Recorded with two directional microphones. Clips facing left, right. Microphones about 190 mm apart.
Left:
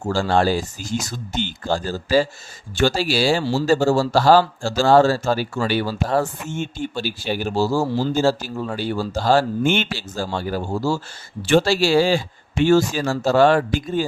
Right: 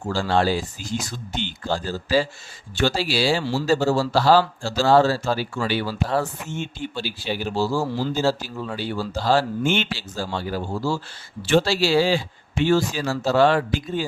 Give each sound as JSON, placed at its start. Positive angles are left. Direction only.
{"t": 0.0, "sound": "speech", "side_deg": 45}